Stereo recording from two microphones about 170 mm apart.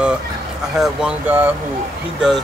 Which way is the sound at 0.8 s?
5° right (ahead or behind).